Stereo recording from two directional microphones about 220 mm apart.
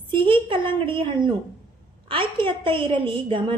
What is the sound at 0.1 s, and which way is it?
A woman's voice, 25° right (ahead or behind).